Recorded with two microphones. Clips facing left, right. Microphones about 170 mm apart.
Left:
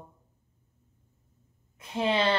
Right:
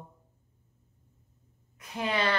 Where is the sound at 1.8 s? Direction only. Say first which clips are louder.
Left 4 dB; 25° left (ahead or behind).